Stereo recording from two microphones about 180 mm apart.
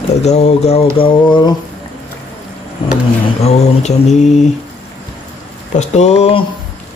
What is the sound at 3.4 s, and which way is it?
Speech, 40° left (ahead or behind).